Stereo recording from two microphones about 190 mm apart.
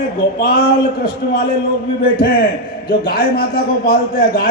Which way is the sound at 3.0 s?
55° left (ahead or behind).